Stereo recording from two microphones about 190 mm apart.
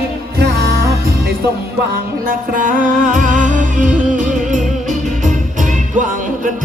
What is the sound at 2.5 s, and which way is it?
Music, 45° right (ahead or behind).